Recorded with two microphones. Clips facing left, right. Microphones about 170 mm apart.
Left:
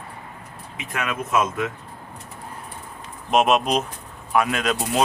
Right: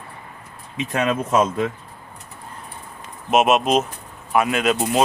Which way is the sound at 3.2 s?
5° right (ahead or behind).